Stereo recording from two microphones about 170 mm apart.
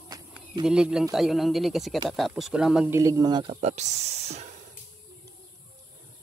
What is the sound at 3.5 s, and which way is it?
Speech, 40° right (ahead or behind).